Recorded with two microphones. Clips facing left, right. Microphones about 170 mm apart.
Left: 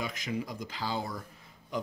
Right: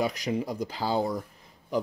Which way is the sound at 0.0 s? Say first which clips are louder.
Right 7 dB; 40° right (ahead or behind).